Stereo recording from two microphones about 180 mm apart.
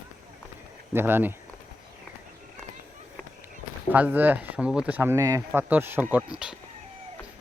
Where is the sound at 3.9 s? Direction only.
10° right (ahead or behind).